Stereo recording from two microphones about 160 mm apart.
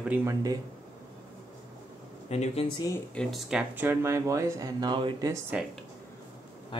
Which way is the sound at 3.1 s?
Centre (ahead or behind).